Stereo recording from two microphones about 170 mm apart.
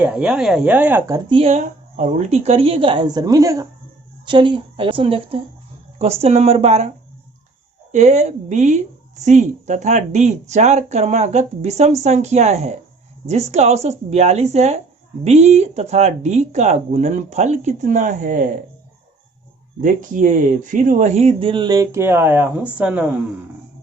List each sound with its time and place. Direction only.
0.0 s speech: 5° right (ahead or behind)
1.3 s speech: 35° right (ahead or behind)
7.9 s a woman's voice: 45° right (ahead or behind)
19.8 s speech: 50° right (ahead or behind); by 23.1 s 5° right (ahead or behind)